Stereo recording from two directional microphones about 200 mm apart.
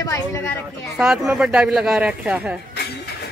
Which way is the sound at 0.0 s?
15° left (ahead or behind).